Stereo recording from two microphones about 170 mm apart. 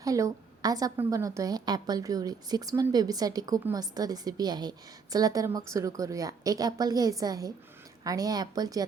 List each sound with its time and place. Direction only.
0.0 s a woman's voice: 20° right (ahead or behind)